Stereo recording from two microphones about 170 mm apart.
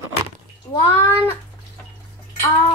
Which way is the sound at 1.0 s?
10° left (ahead or behind).